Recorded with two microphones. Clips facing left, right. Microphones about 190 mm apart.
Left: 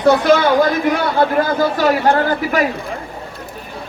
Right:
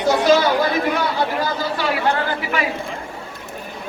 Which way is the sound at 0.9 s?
55° left (ahead or behind).